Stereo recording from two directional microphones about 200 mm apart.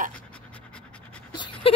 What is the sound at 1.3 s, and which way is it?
Dog, 25° left (ahead or behind).